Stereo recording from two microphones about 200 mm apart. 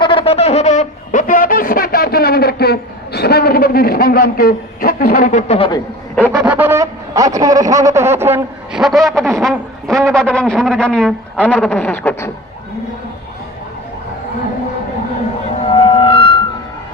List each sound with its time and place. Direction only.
0.0 s a sound: 25° left (ahead or behind)
6.4 s a man's voice: 10° right (ahead or behind); by 12.3 s 5° left (ahead or behind)
15.7 s music: 20° left (ahead or behind)